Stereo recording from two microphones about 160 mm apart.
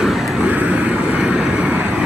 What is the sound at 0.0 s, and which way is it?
Vehicle, centre (ahead or behind).